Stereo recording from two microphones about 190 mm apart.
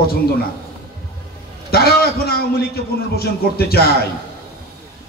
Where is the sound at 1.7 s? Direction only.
55° left (ahead or behind).